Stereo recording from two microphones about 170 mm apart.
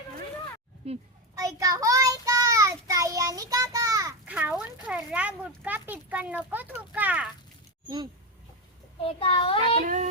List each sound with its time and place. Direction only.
0.8 s a child's voice: 35° right (ahead or behind)
1.4 s child singing: 20° right (ahead or behind)
4.3 s a sound: 10° right (ahead or behind)
5.6 s speech: 10° right (ahead or behind)
9.0 s child singing: 35° left (ahead or behind)
9.8 s yodeling: 50° right (ahead or behind)